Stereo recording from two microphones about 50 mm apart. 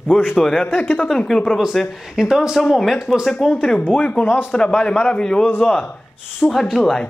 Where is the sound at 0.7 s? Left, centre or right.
Left.